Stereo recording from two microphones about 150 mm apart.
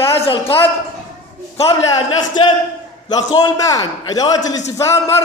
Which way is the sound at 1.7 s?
30° left (ahead or behind).